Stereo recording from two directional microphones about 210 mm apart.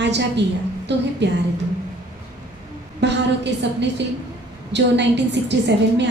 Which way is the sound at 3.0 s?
55° right (ahead or behind).